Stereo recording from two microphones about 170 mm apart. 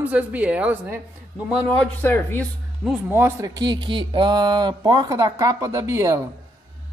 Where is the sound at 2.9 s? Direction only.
10° right (ahead or behind).